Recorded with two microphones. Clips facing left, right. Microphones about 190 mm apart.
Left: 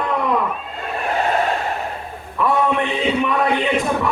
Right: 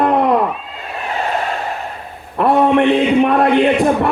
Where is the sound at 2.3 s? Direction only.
65° right (ahead or behind).